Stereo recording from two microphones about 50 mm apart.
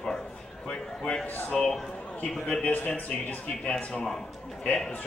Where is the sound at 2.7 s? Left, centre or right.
Left.